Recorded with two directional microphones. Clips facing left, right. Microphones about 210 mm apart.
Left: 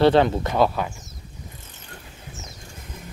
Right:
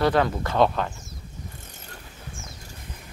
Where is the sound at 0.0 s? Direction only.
25° left (ahead or behind).